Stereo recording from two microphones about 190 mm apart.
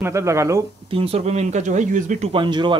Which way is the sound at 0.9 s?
30° right (ahead or behind).